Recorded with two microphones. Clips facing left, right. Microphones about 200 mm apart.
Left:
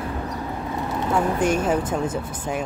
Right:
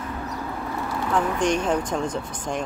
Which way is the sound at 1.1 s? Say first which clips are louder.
Left 1 dB; 5° left (ahead or behind).